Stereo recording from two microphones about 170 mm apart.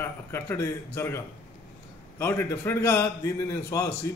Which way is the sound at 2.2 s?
15° left (ahead or behind).